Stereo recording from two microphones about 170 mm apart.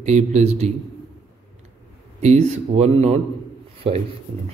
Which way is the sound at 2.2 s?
40° right (ahead or behind).